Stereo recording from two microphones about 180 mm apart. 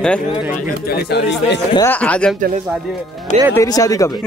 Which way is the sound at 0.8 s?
65° left (ahead or behind).